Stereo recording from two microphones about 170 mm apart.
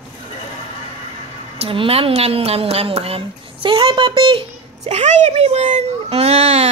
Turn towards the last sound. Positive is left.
turn(degrees=-35)  # may be behind; listen again after turning